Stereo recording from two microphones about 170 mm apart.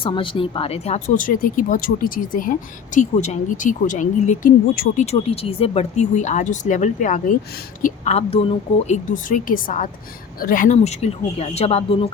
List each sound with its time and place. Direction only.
0.0 s speech: 30° left (ahead or behind); by 4.9 s 60° left (ahead or behind)
5.1 s speech: 35° left (ahead or behind)
9.1 s speech: 50° left (ahead or behind); by 12.0 s 35° left (ahead or behind)